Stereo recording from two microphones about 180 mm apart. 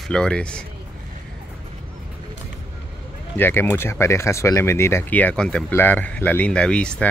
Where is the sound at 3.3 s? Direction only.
10° left (ahead or behind).